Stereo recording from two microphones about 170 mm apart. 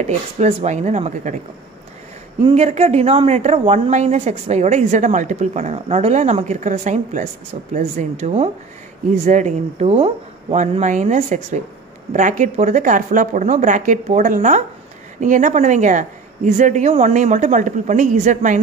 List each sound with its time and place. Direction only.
0.0 s speech: 40° right (ahead or behind)
2.4 s speech: 40° right (ahead or behind)